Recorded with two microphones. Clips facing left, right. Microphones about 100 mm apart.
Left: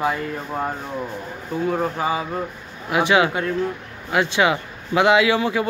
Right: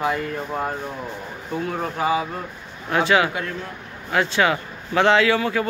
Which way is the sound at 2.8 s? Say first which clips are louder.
Left 1 dB; 15° left (ahead or behind).